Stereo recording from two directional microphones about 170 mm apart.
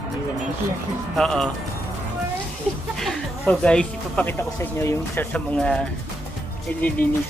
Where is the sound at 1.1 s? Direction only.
Centre (ahead or behind).